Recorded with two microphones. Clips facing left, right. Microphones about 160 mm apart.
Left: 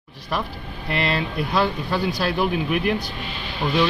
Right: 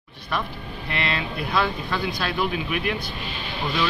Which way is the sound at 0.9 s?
35° left (ahead or behind).